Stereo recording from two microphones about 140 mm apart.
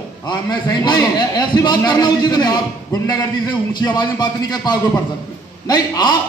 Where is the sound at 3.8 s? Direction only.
30° left (ahead or behind).